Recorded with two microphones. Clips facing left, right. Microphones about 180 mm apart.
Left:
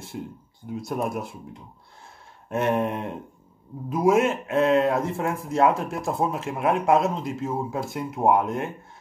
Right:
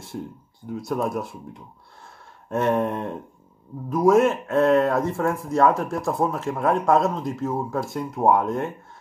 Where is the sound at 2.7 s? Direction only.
10° left (ahead or behind).